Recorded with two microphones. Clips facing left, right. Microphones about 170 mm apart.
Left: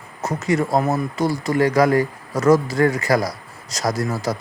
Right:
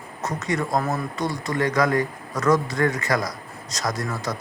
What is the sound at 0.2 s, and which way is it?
Speech, 30° left (ahead or behind).